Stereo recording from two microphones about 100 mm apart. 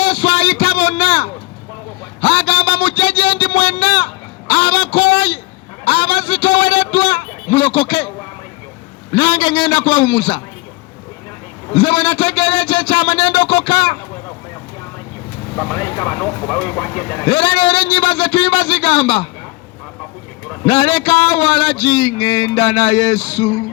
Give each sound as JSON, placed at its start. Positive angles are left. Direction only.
{"t": 0.0, "sound": "a sound", "side_deg": 75}
{"t": 9.1, "sound": "a man's voice", "side_deg": 70}
{"t": 11.7, "sound": "a man's voice", "side_deg": 70}
{"t": 15.7, "sound": "speech", "side_deg": 30}
{"t": 17.2, "sound": "a man's voice", "side_deg": 70}
{"t": 20.7, "sound": "a man's voice", "side_deg": 65}